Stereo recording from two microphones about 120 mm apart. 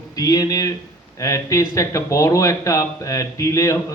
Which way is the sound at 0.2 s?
30° left (ahead or behind).